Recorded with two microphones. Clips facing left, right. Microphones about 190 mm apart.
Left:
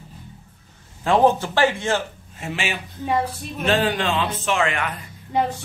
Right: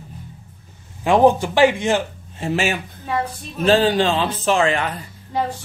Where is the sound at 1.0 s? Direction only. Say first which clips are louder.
Right 3 dB; 15° right (ahead or behind).